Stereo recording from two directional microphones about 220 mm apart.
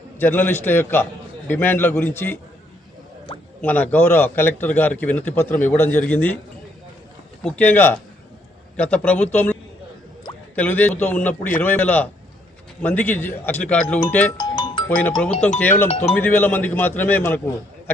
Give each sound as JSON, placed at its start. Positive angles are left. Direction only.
{"t": 0.2, "sound": "a man's voice", "side_deg": 10}
{"t": 3.6, "sound": "a man's voice", "side_deg": 10}
{"t": 7.4, "sound": "a man's voice", "side_deg": 5}
{"t": 14.3, "sound": "music", "side_deg": 20}
{"t": 14.8, "sound": "a man's voice", "side_deg": 10}